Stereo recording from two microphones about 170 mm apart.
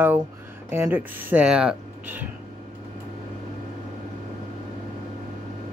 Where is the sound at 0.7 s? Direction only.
10° right (ahead or behind).